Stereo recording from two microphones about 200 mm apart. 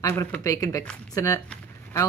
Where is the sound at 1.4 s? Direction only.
10° left (ahead or behind).